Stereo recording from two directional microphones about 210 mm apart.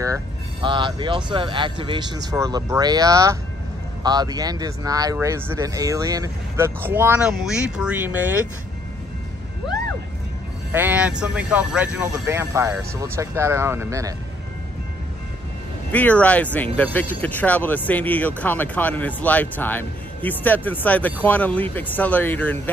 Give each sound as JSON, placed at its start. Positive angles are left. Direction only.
{"t": 0.0, "sound": "speech", "side_deg": -20}
{"t": 10.7, "sound": "speech", "side_deg": -10}
{"t": 15.9, "sound": "speech", "side_deg": 5}